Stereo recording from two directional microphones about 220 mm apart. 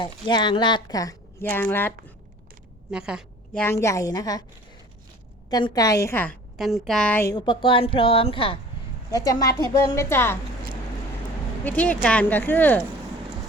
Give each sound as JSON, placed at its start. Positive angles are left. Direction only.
{"t": 0.0, "sound": "a woman's voice", "side_deg": 20}
{"t": 2.9, "sound": "a woman's voice", "side_deg": -5}
{"t": 3.6, "sound": "a woman's voice", "side_deg": 10}
{"t": 5.5, "sound": "a woman's voice", "side_deg": 20}
{"t": 11.6, "sound": "a woman's voice", "side_deg": 5}